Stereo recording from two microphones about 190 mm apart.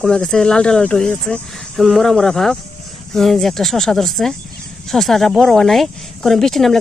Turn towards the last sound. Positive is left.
turn(degrees=0)  # may be behind; listen again after turning